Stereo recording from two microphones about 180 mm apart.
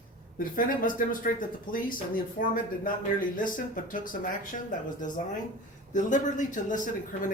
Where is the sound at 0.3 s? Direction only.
50° left (ahead or behind).